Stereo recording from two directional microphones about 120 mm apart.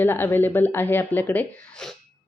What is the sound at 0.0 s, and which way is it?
Speech, 15° left (ahead or behind).